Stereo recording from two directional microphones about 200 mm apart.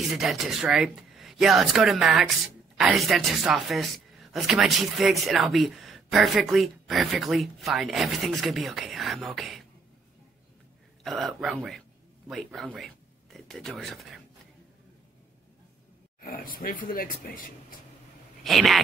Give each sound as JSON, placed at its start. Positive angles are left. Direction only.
{"t": 0.1, "sound": "speech", "side_deg": 0}
{"t": 11.1, "sound": "speech", "side_deg": 0}
{"t": 16.2, "sound": "speech", "side_deg": 45}
{"t": 18.4, "sound": "speech", "side_deg": 0}